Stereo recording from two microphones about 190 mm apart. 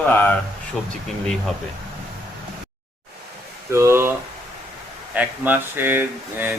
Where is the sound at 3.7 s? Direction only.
15° right (ahead or behind).